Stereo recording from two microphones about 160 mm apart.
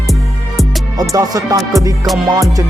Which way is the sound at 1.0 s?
20° right (ahead or behind).